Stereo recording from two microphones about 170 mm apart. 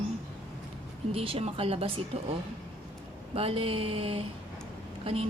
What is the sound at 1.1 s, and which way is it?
A woman's voice, 35° right (ahead or behind).